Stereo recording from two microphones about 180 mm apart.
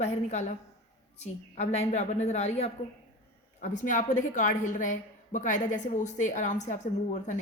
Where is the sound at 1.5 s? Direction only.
40° left (ahead or behind).